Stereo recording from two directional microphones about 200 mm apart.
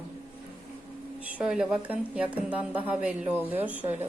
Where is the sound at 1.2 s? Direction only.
5° right (ahead or behind).